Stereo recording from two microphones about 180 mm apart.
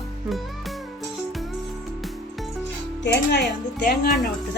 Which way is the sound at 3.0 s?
70° left (ahead or behind).